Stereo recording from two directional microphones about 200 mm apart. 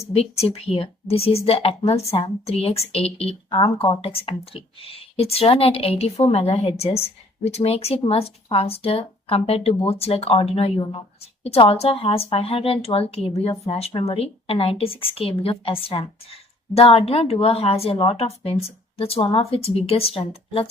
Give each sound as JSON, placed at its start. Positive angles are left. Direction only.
{"t": 0.0, "sound": "a woman's voice", "side_deg": 30}